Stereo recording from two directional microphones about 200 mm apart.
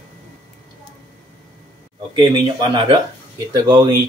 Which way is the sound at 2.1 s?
25° right (ahead or behind).